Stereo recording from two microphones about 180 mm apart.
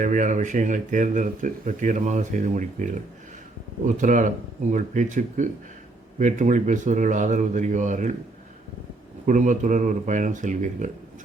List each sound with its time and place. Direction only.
0.0 s speech: 45° right (ahead or behind)
9.2 s speech: 45° right (ahead or behind)